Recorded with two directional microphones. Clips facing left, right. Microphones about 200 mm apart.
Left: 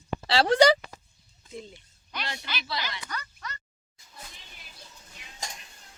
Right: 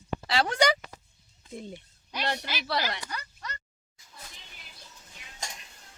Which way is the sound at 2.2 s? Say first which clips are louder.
Right 7 dB; 65° right (ahead or behind).